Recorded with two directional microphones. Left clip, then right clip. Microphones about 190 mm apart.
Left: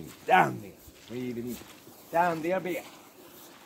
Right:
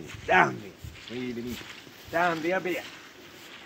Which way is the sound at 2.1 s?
55° left (ahead or behind).